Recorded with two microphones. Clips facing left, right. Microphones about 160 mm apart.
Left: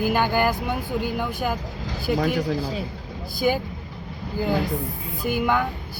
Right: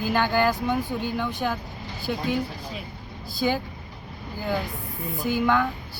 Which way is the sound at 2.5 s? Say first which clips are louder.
Left 9 dB; 30° left (ahead or behind).